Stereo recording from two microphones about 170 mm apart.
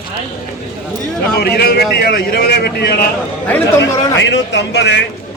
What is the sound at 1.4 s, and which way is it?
A man's voice, 70° left (ahead or behind).